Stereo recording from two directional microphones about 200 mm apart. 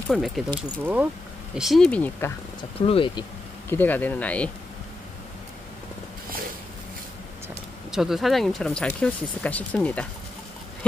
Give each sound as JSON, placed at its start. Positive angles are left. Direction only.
{"t": 0.1, "sound": "speech", "side_deg": 0}
{"t": 2.8, "sound": "speech", "side_deg": 25}
{"t": 3.6, "sound": "speech", "side_deg": 10}
{"t": 7.9, "sound": "speech", "side_deg": 0}